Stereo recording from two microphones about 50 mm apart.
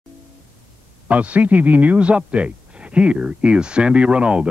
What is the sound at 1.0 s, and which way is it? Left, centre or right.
A man's voice, right.